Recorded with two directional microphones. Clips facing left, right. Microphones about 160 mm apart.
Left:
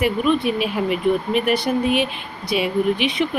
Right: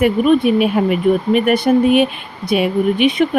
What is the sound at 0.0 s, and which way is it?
Speech, 55° right (ahead or behind).